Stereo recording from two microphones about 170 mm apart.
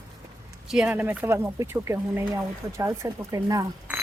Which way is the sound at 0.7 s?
5° right (ahead or behind).